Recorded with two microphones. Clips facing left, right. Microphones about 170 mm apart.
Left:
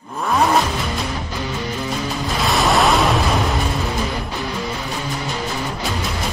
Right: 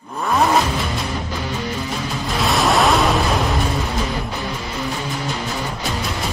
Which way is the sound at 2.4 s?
Centre (ahead or behind).